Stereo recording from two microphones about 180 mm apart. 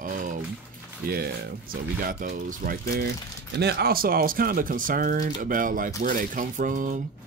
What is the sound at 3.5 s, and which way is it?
Speech, 65° right (ahead or behind).